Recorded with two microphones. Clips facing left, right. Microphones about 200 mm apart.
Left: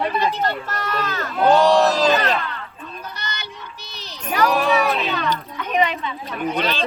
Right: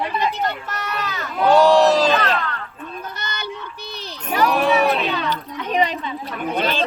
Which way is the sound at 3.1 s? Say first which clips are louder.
Right 4 dB; 50° right (ahead or behind).